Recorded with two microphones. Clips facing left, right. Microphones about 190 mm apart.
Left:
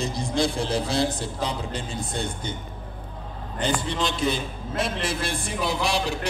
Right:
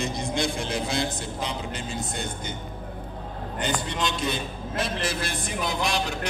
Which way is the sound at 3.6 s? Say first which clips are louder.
Left 3 dB; 30° left (ahead or behind).